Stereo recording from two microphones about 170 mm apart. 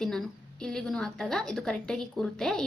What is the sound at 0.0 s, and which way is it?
A woman's voice, 5° left (ahead or behind).